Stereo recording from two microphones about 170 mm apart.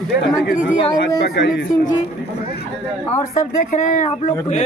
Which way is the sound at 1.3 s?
90° left.